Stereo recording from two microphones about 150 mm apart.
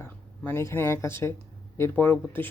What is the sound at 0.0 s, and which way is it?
Speech, 15° left (ahead or behind).